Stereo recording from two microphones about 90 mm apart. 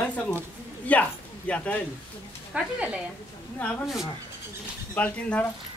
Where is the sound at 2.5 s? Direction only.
15° right (ahead or behind).